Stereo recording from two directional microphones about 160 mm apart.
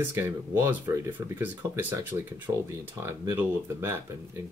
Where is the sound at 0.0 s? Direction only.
15° right (ahead or behind).